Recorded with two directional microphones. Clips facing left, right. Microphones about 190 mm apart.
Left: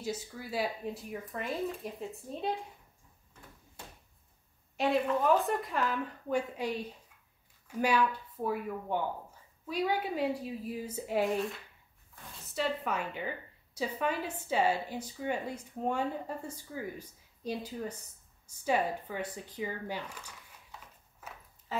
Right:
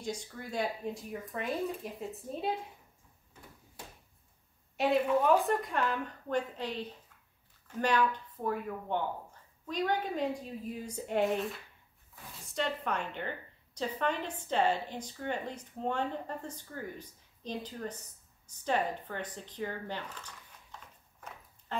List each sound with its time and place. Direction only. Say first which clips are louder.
0.0 s speech: left 1 dB; 5° left (ahead or behind)
4.7 s a woman's voice: right 1 dB; centre (ahead or behind)
18.6 s zipper: left 1 dB; 10° left (ahead or behind)